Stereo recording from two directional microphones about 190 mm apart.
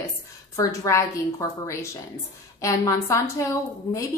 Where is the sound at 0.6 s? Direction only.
15° left (ahead or behind).